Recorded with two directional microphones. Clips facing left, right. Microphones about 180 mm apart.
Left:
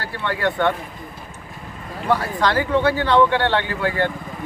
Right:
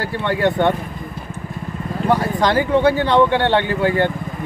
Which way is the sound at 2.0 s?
15° right (ahead or behind).